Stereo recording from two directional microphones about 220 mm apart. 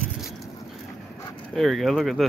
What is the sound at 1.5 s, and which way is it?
Speech, centre (ahead or behind).